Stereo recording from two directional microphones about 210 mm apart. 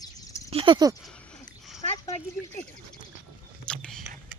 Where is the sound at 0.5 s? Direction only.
25° right (ahead or behind).